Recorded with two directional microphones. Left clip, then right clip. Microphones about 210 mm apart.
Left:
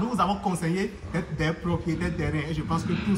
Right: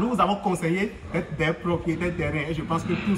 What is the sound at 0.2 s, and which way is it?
A man's voice, 55° left (ahead or behind).